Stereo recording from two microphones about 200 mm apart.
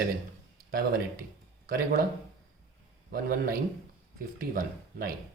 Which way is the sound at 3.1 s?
50° right (ahead or behind).